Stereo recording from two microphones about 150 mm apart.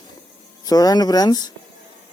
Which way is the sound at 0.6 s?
25° left (ahead or behind).